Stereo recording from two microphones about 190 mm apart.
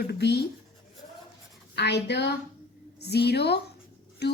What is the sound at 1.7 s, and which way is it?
A woman's voice, 65° left (ahead or behind).